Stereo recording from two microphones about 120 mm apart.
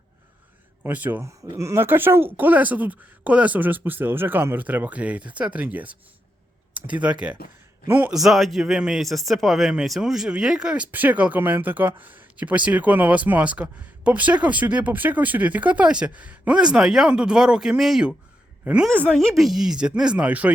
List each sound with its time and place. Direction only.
0.8 s speech: 15° right (ahead or behind)
8.1 s a woman's voice: centre (ahead or behind)
18.9 s speech: 5° left (ahead or behind); by 20.5 s 10° right (ahead or behind)